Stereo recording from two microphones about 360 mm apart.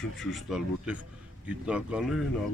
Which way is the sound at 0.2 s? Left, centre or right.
Centre.